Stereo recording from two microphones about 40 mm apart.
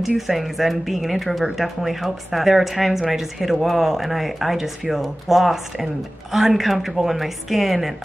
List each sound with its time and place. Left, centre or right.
0.0 s speech: centre